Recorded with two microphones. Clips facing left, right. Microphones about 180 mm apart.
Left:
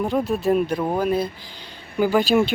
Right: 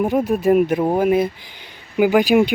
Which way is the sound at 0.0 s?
15° right (ahead or behind).